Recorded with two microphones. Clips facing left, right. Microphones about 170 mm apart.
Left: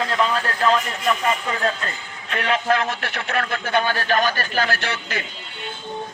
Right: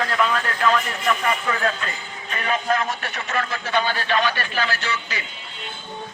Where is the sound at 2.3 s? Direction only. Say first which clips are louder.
Left 2 dB; 75° left (ahead or behind); by 5.2 s 55° left (ahead or behind).